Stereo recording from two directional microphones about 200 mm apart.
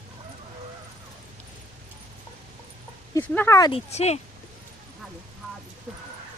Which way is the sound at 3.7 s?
30° left (ahead or behind).